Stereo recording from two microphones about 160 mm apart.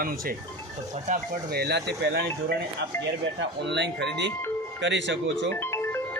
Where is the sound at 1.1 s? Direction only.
50° right (ahead or behind).